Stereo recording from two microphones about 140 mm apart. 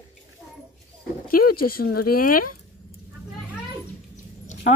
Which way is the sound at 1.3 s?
90° left.